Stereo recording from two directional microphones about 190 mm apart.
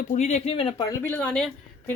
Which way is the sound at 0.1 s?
35° left (ahead or behind).